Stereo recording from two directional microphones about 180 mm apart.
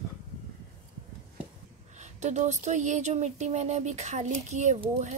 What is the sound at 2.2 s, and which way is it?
Speech, 40° right (ahead or behind).